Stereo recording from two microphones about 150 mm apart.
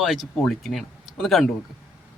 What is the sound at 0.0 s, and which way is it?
Speech, centre (ahead or behind).